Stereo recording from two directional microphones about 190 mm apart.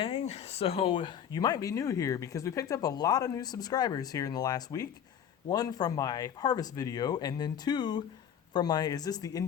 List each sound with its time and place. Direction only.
0.0 s speech: 30° left (ahead or behind)